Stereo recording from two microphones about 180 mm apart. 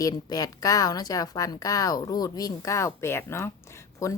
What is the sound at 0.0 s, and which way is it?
A woman's voice, 20° left (ahead or behind).